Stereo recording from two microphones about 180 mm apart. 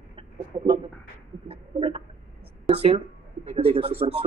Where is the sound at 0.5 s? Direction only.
25° right (ahead or behind).